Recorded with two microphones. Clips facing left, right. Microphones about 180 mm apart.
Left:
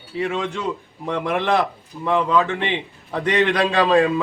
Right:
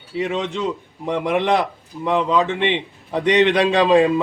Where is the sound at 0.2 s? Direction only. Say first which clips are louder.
Right 2 dB; 20° right (ahead or behind).